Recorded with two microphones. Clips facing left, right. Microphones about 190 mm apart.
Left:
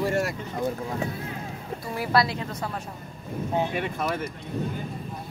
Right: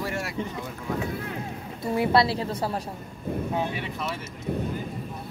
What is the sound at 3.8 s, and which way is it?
Speech, 50° left (ahead or behind).